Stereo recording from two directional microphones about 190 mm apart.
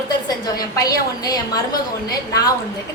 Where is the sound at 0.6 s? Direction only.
20° left (ahead or behind).